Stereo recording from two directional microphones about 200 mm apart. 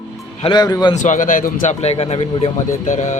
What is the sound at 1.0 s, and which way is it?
Speech, 40° left (ahead or behind).